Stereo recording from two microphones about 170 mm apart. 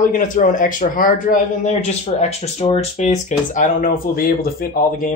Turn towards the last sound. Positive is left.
turn(degrees=55)  # may be behind; listen again after turning